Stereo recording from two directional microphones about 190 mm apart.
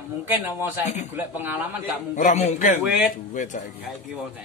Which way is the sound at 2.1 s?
40° left (ahead or behind).